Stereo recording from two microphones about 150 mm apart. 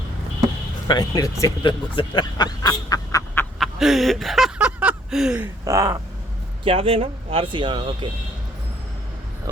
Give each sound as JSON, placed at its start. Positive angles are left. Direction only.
{"t": 0.9, "sound": "speech", "side_deg": 25}
{"t": 3.6, "sound": "a sound", "side_deg": 0}
{"t": 5.6, "sound": "speech", "side_deg": -20}
{"t": 6.7, "sound": "speech", "side_deg": -35}